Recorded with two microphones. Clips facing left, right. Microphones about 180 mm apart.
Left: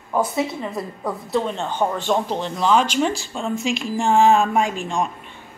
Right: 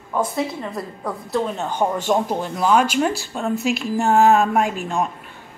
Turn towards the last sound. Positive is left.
turn(degrees=-5)  # may be behind; listen again after turning